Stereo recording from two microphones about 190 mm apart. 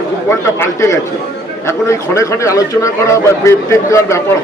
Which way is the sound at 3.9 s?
15° left (ahead or behind).